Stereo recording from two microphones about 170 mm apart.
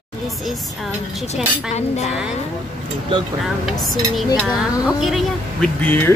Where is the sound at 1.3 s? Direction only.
40° left (ahead or behind).